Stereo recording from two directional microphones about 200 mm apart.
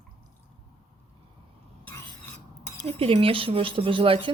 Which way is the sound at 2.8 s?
30° right (ahead or behind).